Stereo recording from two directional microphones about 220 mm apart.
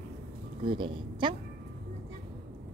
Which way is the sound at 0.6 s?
20° right (ahead or behind).